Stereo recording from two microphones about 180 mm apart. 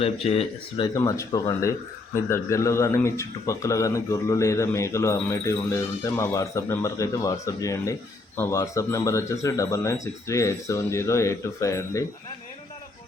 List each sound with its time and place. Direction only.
0.0 s speech: 35° left (ahead or behind)
0.9 s speech: 20° left (ahead or behind)